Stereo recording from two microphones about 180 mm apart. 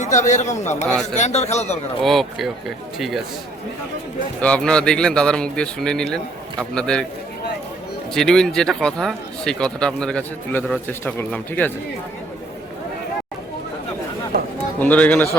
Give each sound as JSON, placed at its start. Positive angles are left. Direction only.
{"t": 0.0, "sound": "a man's voice", "side_deg": 40}
{"t": 2.0, "sound": "speech", "side_deg": 0}
{"t": 4.4, "sound": "speech", "side_deg": 5}
{"t": 8.1, "sound": "speech", "side_deg": 5}
{"t": 14.8, "sound": "speech", "side_deg": 10}